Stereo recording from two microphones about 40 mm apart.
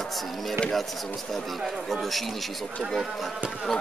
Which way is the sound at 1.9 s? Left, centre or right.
Centre.